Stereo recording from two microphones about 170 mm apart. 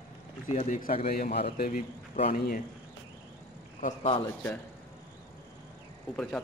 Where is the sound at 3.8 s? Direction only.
40° left (ahead or behind).